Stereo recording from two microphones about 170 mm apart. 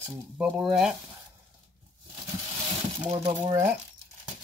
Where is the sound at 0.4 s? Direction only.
Centre (ahead or behind).